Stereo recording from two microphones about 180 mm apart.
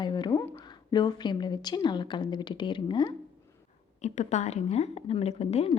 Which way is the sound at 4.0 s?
40° left (ahead or behind).